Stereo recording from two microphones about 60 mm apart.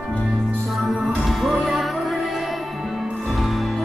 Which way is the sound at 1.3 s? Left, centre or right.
Centre.